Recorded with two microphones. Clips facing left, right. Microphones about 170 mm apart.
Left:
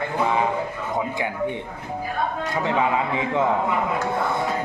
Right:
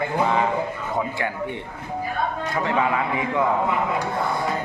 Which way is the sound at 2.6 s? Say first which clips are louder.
Left 1 dB; 20° left (ahead or behind).